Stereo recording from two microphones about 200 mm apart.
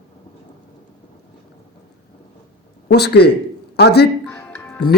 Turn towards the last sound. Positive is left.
turn(degrees=10)  # may be behind; listen again after turning